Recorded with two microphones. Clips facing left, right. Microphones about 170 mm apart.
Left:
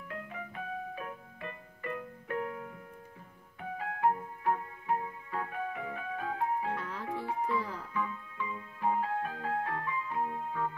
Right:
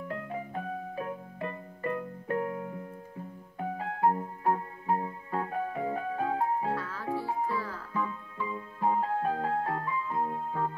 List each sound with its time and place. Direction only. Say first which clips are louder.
0.1 s music: right 5 dB; 40° right (ahead or behind)
6.7 s music: right 3 dB; 20° left (ahead or behind)
7.1 s music: right 3 dB; 40° right (ahead or behind)
7.5 s music: even; 20° left (ahead or behind)
7.9 s music: right 6 dB; 35° right (ahead or behind)